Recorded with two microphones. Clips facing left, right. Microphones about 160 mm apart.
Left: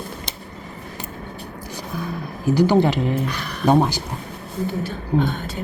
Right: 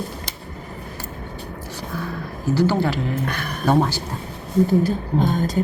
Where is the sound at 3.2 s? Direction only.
50° right (ahead or behind).